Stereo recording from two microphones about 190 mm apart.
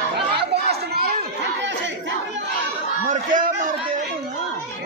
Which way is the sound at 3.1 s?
45° right (ahead or behind).